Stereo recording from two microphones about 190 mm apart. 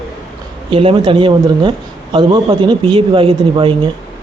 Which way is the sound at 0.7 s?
30° right (ahead or behind).